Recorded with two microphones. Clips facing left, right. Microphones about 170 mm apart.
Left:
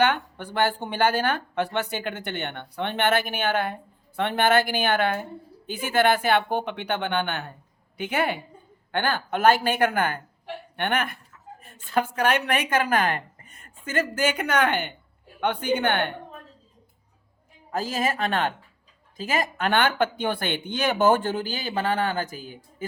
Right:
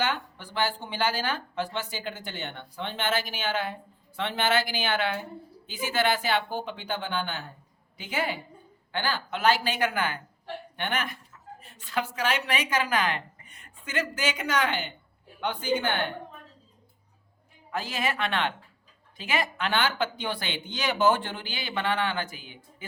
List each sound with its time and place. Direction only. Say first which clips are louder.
0.0 s speech: left 7 dB; 60° left (ahead or behind)
17.7 s speech: left 4 dB; 40° left (ahead or behind)